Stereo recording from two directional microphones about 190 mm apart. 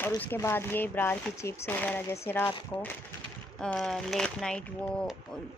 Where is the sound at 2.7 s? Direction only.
25° left (ahead or behind).